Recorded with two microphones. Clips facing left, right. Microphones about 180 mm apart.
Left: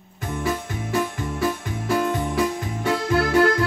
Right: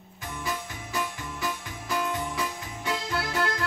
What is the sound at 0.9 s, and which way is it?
Keyboard, 55° left (ahead or behind).